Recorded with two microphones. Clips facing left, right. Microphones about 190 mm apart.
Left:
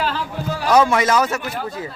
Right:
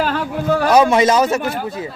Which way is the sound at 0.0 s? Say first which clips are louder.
Right 5 dB; 55° right (ahead or behind).